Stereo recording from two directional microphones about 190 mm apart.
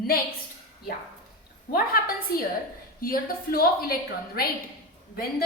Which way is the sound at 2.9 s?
50° left (ahead or behind).